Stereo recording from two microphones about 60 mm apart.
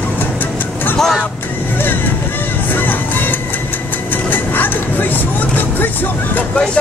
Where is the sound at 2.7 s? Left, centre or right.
Left.